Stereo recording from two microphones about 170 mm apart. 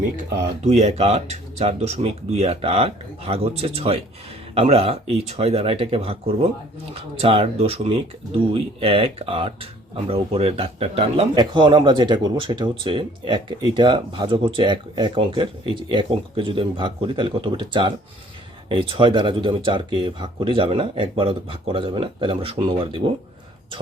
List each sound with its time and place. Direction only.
0.6 s speech: 40° right (ahead or behind)